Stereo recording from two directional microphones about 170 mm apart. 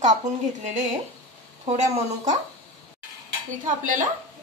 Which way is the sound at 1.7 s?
45° right (ahead or behind).